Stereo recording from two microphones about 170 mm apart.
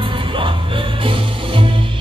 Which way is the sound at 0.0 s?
30° right (ahead or behind).